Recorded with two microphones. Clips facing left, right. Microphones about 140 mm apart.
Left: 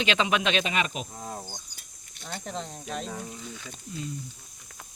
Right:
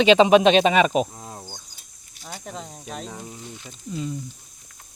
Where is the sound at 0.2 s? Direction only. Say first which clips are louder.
Right 11 dB; 25° right (ahead or behind).